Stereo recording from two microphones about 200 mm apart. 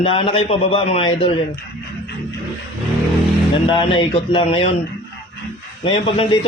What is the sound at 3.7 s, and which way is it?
Speech, 25° left (ahead or behind).